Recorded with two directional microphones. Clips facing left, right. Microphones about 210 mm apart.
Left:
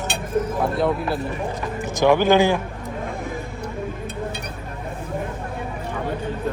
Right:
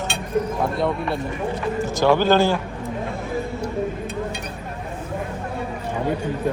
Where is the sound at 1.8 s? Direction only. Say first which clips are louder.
Left 1 dB; 15° left (ahead or behind).